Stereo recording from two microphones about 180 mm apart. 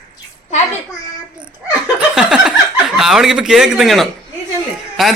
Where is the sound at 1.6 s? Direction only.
5° right (ahead or behind).